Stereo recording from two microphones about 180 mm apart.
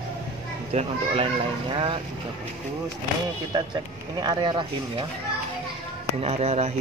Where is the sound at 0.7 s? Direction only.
30° right (ahead or behind).